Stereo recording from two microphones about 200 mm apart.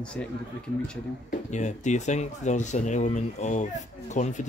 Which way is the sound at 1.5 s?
35° left (ahead or behind).